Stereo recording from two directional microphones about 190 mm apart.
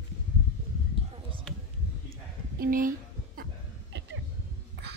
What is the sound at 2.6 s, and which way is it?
Speech, 45° right (ahead or behind).